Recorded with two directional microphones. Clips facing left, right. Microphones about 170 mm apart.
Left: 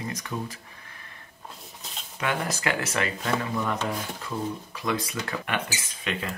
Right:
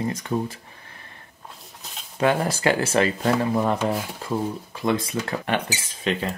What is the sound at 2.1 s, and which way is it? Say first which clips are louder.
Speech: right 8 dB; 30° right (ahead or behind).